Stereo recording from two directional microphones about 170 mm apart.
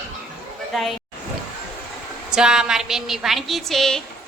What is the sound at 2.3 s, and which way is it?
A woman's voice, 5° right (ahead or behind).